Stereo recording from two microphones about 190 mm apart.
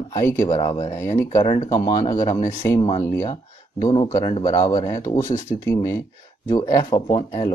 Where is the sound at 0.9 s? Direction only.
15° left (ahead or behind).